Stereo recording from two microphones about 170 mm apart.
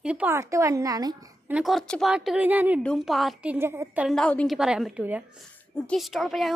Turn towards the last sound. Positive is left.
turn(degrees=0)  # may be behind; listen again after turning